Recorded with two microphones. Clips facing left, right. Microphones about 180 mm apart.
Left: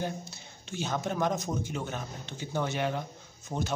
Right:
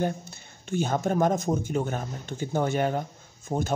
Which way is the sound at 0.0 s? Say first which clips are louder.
Right 6 dB; 50° right (ahead or behind).